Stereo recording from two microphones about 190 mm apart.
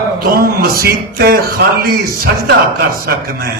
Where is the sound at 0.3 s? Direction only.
55° right (ahead or behind).